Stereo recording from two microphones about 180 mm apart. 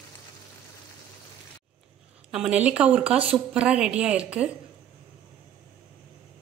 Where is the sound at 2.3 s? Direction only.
5° right (ahead or behind).